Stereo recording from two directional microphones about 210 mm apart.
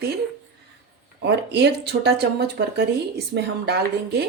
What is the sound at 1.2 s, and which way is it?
A woman's voice, 55° right (ahead or behind).